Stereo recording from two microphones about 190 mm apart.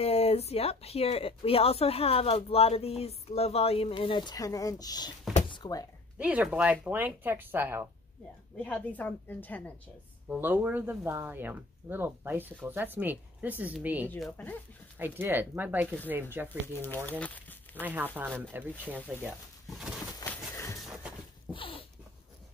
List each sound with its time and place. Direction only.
0.0 s speech: 30° left (ahead or behind)
5.3 s a sound: 25° left (ahead or behind)
6.1 s speech: 5° right (ahead or behind)
8.5 s a woman's voice: 5° left (ahead or behind)
10.2 s speech: 10° right (ahead or behind)
14.0 s a woman's voice: 10° left (ahead or behind)
15.0 s speech: 10° right (ahead or behind)
16.6 s a woman's voice: 10° left (ahead or behind)
17.2 s crumpling: 10° left (ahead or behind)
17.8 s speech: 10° right (ahead or behind)
20.5 s a sound: 15° left (ahead or behind)
21.5 s a sound: 30° left (ahead or behind)